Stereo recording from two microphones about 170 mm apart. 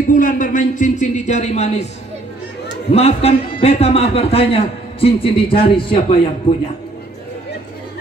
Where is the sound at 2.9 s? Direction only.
35° left (ahead or behind).